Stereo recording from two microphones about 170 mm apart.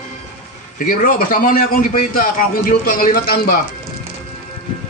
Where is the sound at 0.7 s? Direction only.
55° left (ahead or behind).